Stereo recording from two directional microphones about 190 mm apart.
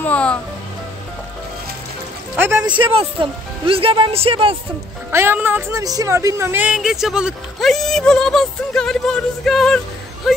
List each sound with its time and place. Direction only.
0.0 s music: 5° left (ahead or behind)
2.3 s a sound: 10° right (ahead or behind)
2.7 s speech: 30° right (ahead or behind)
5.1 s speech: 10° right (ahead or behind)